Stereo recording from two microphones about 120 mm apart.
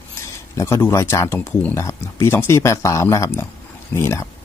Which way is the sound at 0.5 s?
20° left (ahead or behind).